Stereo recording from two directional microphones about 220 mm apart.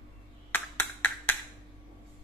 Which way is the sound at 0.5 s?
10° left (ahead or behind).